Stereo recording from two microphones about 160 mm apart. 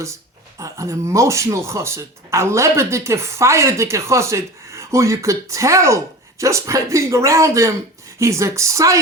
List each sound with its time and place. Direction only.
0.6 s speech: 20° right (ahead or behind)